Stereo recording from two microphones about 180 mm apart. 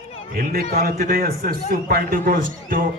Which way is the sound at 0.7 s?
55° right (ahead or behind).